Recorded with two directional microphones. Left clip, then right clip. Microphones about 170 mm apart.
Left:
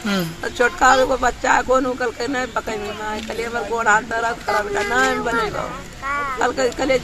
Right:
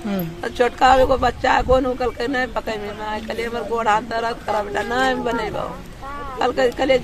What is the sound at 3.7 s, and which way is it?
Speech, 35° right (ahead or behind).